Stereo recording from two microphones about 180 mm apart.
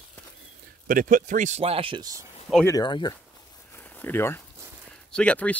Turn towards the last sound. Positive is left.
turn(degrees=5)  # may be behind; listen again after turning